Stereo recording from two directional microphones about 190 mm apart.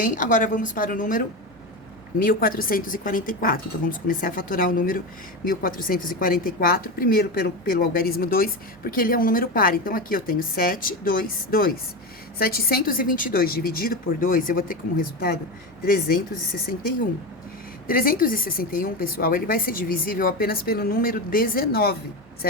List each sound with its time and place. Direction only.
0.0 s a woman's voice: 45° left (ahead or behind)
17.8 s a woman's voice: 50° left (ahead or behind)